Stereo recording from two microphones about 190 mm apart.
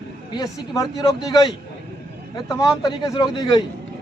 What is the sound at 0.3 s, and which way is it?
Speech, 20° left (ahead or behind).